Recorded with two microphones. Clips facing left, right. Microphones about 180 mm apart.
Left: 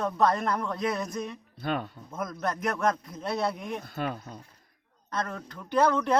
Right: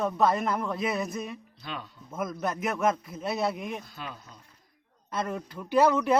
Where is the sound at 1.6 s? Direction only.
55° left (ahead or behind).